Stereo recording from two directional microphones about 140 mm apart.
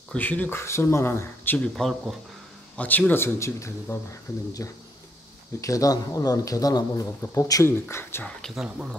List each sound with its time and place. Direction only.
0.1 s speech: 10° left (ahead or behind)
1.8 s speech: centre (ahead or behind)
2.8 s speech: 10° left (ahead or behind)
8.4 s speech: centre (ahead or behind)